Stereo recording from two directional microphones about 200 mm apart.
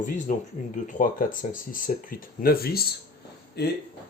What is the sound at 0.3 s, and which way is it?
Speech, 40° left (ahead or behind).